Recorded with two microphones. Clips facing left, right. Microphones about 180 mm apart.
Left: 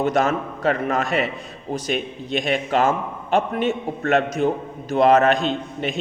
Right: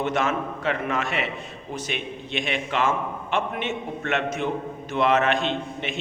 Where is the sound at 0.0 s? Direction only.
40° left (ahead or behind).